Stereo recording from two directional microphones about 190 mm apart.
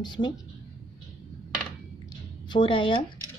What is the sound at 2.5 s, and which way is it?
Speech, 25° left (ahead or behind).